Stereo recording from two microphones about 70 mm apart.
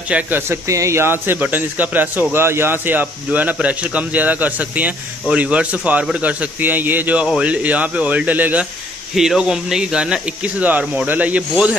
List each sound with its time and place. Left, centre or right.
0.1 s speech: right
0.7 s a man's voice: right
9.1 s speech: centre